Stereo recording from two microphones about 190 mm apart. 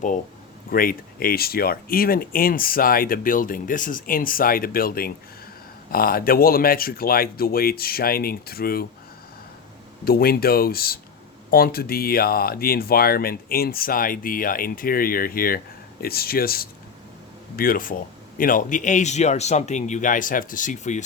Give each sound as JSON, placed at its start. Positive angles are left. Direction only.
{"t": 0.7, "sound": "speech", "side_deg": 50}
{"t": 10.0, "sound": "speech", "side_deg": 55}